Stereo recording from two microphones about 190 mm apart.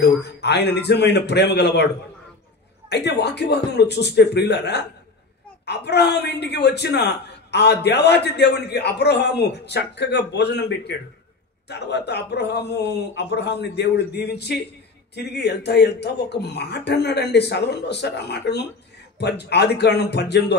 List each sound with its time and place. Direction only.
0.0 s a man's voice: 60° left (ahead or behind)
2.9 s a man's voice: 60° left (ahead or behind)